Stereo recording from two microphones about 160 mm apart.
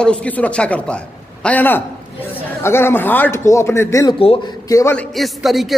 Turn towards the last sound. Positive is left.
turn(degrees=0)  # may be behind; listen again after turning